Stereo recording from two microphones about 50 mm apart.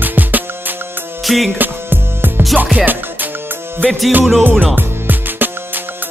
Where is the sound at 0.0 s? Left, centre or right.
Right.